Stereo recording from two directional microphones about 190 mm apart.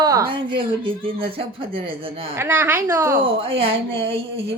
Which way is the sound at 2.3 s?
10° right (ahead or behind).